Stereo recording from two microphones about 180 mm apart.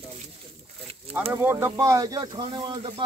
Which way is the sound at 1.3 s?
15° right (ahead or behind).